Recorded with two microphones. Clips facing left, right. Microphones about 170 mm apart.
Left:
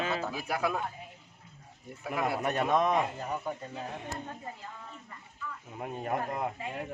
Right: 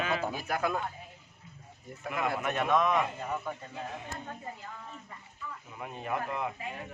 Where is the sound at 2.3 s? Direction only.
35° left (ahead or behind).